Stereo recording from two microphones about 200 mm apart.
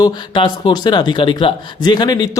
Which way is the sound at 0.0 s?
25° left (ahead or behind).